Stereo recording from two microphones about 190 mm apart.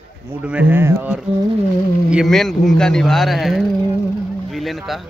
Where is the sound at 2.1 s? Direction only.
Centre (ahead or behind).